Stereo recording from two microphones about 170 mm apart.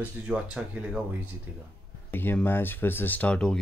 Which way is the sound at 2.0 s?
10° left (ahead or behind).